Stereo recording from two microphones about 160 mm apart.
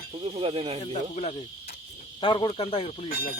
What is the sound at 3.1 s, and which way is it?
Speech, 75° left (ahead or behind).